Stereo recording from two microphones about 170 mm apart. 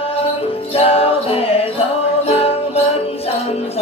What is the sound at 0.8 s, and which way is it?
Music, 35° left (ahead or behind).